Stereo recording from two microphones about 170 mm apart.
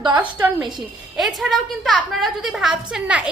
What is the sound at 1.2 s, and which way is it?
A woman's voice, centre (ahead or behind).